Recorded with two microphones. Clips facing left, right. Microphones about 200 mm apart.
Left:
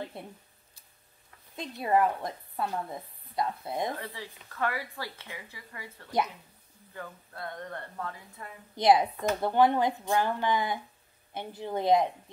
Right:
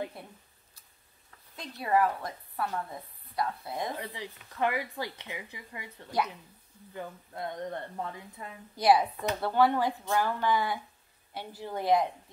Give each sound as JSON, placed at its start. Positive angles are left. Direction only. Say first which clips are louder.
{"t": 0.2, "sound": "a woman's voice", "louder": "left 4 dB", "side_deg": 25}
{"t": 1.6, "sound": "a woman's voice", "louder": "left 1 dB", "side_deg": 20}
{"t": 4.0, "sound": "speech", "louder": "right 1 dB", "side_deg": -20}
{"t": 8.7, "sound": "a woman's voice", "louder": "left 1 dB", "side_deg": 20}